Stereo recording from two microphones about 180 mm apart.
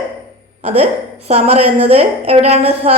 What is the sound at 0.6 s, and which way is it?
A woman's voice, 35° right (ahead or behind).